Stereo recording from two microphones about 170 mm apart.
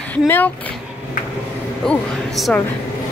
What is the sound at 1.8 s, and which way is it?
Speech, 5° left (ahead or behind).